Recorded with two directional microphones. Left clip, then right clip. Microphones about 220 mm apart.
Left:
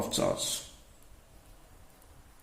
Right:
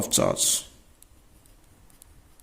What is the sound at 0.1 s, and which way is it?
Speech, 50° right (ahead or behind).